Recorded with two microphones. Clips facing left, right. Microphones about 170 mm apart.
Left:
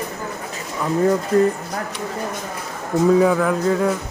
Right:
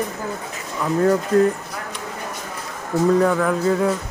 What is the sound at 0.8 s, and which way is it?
Speech, 5° left (ahead or behind).